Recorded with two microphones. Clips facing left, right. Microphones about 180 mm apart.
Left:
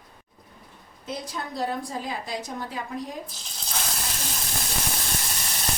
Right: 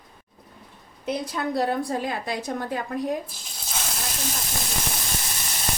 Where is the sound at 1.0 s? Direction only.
65° right (ahead or behind).